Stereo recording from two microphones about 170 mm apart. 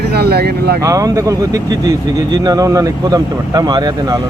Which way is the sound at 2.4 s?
20° right (ahead or behind).